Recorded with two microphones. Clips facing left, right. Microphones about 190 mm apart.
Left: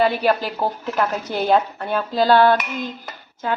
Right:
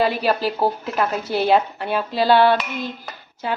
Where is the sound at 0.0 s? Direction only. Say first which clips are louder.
Left 1 dB; 35° right (ahead or behind).